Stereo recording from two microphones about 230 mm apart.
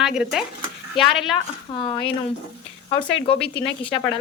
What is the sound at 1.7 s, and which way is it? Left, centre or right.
A woman's voice, left.